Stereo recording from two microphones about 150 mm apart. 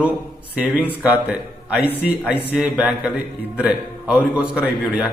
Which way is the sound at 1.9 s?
90° left.